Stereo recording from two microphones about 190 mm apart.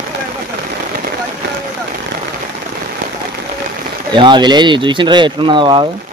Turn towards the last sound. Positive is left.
turn(degrees=-25)  # may be behind; listen again after turning